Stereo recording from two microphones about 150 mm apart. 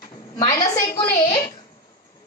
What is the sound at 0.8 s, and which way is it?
Speech, 20° left (ahead or behind).